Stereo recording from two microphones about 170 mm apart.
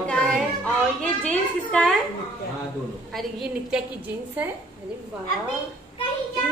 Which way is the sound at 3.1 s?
5° right (ahead or behind).